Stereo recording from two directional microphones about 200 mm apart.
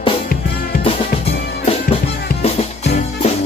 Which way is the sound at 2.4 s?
30° left (ahead or behind).